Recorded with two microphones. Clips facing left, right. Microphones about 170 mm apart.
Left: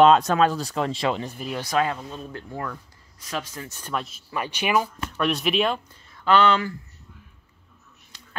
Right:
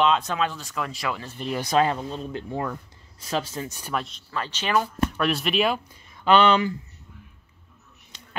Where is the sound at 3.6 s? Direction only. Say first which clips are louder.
Right 3 dB; 10° right (ahead or behind).